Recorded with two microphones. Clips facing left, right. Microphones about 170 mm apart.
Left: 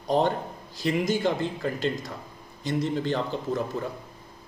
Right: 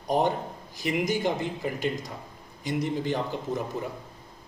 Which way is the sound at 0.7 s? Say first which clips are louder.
Left 2 dB; 15° right (ahead or behind).